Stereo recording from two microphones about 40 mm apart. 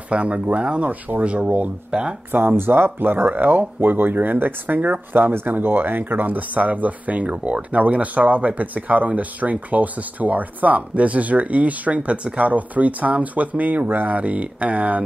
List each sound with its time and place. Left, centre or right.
0.1 s speech: right
0.8 s speech: right
1.2 s speech: right
1.9 s speech: right
2.3 s speech: right
5.1 s speech: right
14.1 s speech: right